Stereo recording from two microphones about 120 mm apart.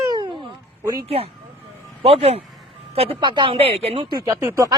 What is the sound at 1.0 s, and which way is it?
A man's voice, 55° right (ahead or behind).